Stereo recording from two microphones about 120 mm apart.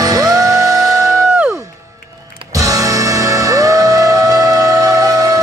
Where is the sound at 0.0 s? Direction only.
30° right (ahead or behind).